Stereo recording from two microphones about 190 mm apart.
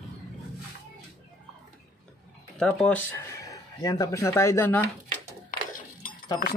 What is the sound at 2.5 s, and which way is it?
Speech, 5° left (ahead or behind).